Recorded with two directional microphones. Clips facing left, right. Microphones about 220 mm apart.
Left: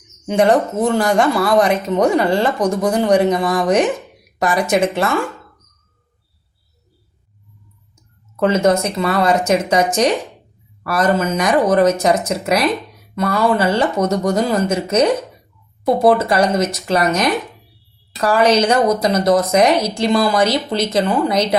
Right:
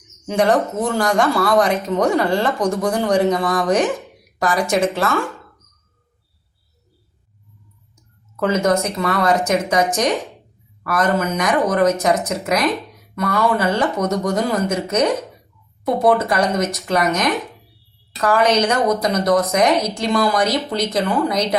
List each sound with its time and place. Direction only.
0.3 s speech: 20° left (ahead or behind)
8.4 s speech: 30° left (ahead or behind)